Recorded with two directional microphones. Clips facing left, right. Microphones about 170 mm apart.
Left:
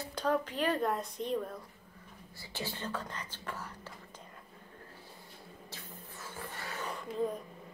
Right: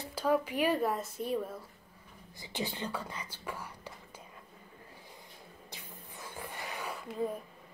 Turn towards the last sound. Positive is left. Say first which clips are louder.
# left 1 dB
turn(degrees=-5)  # may be behind; listen again after turning